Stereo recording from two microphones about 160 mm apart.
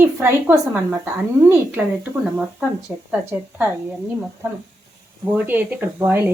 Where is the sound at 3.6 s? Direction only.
10° right (ahead or behind).